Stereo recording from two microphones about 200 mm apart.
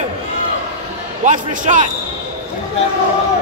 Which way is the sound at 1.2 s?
40° right (ahead or behind).